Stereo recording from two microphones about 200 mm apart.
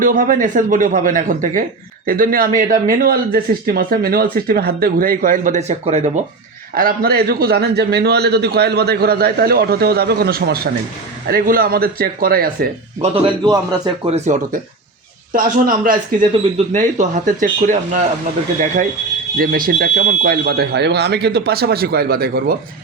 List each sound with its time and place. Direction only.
0.0 s a man's voice: 45° right (ahead or behind)
6.7 s a man's voice: 45° right (ahead or behind)
13.0 s a man's voice: 25° right (ahead or behind)
14.1 s a man's voice: 35° right (ahead or behind)
19.4 s a man's voice: 45° right (ahead or behind)